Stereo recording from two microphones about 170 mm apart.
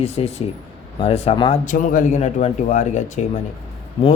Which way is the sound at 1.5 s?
50° left (ahead or behind).